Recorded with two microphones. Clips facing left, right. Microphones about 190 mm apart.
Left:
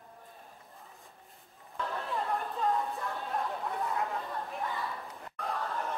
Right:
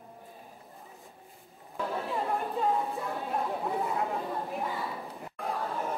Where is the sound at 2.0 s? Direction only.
5° right (ahead or behind).